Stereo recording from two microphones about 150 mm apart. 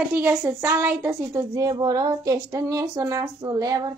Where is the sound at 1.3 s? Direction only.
20° right (ahead or behind).